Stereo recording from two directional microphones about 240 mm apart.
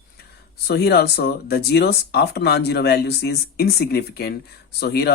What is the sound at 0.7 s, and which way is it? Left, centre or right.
Speech, left.